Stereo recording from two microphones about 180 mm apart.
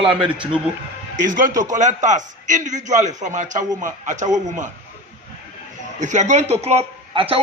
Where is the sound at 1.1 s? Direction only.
45° right (ahead or behind).